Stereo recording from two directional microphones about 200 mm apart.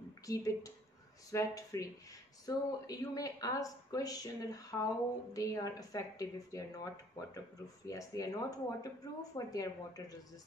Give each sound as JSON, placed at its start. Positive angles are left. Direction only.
{"t": 0.3, "sound": "speech", "side_deg": 15}